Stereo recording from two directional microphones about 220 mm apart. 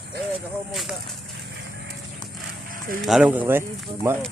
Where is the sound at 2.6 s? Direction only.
40° right (ahead or behind).